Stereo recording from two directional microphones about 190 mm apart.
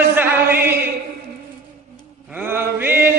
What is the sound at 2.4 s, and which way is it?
Mantra, 10° right (ahead or behind).